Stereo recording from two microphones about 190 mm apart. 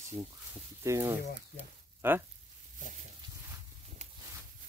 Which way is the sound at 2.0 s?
10° right (ahead or behind).